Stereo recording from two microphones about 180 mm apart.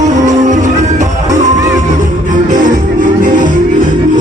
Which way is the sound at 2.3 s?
45° right (ahead or behind).